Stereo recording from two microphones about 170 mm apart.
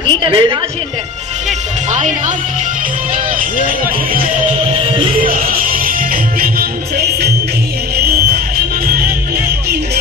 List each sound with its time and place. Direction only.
0.2 s a woman's voice: 25° right (ahead or behind)
1.9 s speech: 45° right (ahead or behind)
3.3 s speech: 55° right (ahead or behind)
4.9 s music: 30° right (ahead or behind)
5.3 s music: 55° right (ahead or behind)
7.0 s music: 70° right (ahead or behind)